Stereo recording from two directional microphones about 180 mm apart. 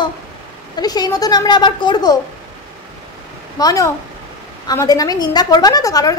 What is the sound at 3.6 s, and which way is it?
A woman's voice, 20° left (ahead or behind).